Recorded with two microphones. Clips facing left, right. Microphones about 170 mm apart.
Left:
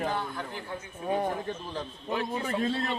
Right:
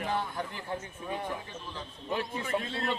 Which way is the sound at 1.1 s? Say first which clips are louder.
Left 7 dB; 45° left (ahead or behind).